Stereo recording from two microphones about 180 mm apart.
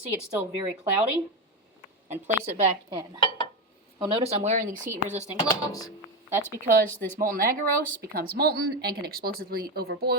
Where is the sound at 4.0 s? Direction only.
30° right (ahead or behind).